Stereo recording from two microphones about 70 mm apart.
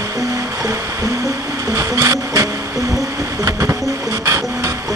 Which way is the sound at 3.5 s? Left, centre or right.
Right.